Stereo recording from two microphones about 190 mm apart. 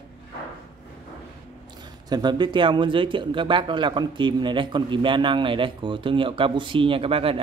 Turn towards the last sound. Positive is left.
turn(degrees=-30)  # may be behind; listen again after turning